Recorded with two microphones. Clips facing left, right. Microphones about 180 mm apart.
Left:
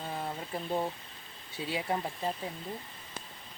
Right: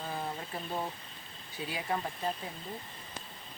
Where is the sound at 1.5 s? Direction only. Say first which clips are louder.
Left 2 dB; 25° left (ahead or behind).